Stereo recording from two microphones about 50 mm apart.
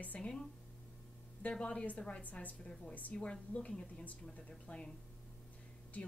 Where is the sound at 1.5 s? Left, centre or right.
Left.